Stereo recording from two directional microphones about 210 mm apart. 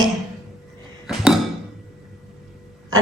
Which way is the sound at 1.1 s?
5° right (ahead or behind).